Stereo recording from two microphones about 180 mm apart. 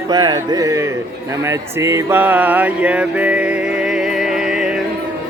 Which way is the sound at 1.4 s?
15° right (ahead or behind).